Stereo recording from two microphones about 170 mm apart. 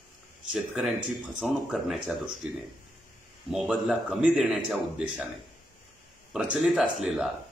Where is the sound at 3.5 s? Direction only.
5° right (ahead or behind).